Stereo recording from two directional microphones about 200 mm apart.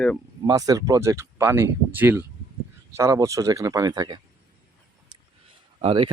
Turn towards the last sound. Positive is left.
turn(degrees=-25)  # may be behind; listen again after turning